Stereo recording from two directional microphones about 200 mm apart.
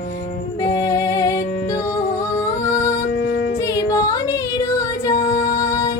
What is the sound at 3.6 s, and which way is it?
Music, 15° left (ahead or behind).